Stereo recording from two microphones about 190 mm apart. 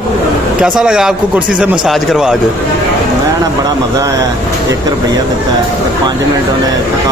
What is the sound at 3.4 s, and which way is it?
Speech, 20° right (ahead or behind).